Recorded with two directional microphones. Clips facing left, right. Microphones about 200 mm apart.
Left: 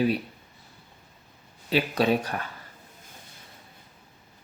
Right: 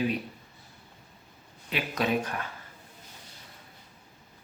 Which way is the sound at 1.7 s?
30° left (ahead or behind).